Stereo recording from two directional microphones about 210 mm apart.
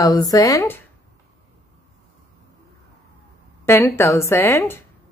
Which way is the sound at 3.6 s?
10° left (ahead or behind).